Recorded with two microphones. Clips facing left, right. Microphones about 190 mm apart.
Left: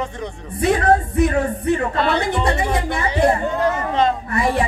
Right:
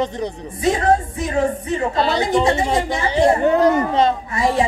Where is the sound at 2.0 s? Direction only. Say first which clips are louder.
Right 2 dB; 30° right (ahead or behind).